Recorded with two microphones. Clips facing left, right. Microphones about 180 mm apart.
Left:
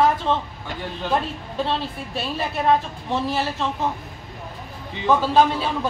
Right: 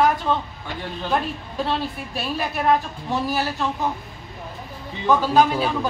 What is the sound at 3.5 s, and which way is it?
Speech, centre (ahead or behind).